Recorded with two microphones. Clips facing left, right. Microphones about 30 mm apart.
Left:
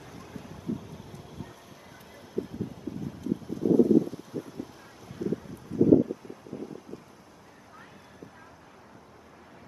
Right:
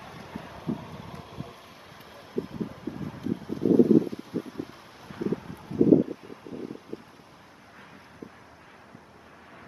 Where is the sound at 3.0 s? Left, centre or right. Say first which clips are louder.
Even; right.